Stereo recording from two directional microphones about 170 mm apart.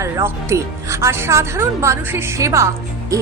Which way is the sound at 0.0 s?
15° right (ahead or behind).